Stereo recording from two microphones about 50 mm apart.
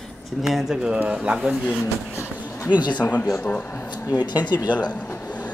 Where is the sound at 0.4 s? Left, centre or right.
Centre.